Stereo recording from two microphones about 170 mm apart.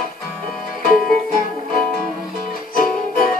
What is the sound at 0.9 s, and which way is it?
Music, 55° left (ahead or behind).